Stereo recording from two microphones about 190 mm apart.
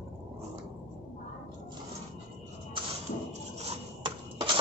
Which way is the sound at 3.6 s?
30° right (ahead or behind).